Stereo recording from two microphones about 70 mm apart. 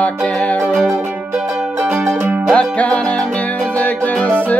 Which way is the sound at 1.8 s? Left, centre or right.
Right.